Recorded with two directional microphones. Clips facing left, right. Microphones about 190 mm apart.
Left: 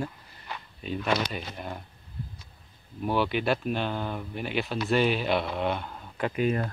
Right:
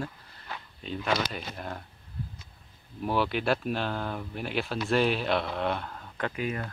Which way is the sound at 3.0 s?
Centre (ahead or behind).